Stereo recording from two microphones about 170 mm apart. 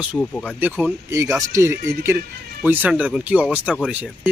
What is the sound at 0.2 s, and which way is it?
Speech, 10° left (ahead or behind).